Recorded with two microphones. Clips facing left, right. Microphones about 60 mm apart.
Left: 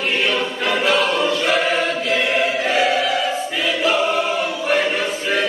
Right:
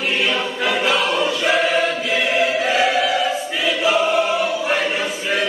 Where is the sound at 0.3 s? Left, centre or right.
Centre.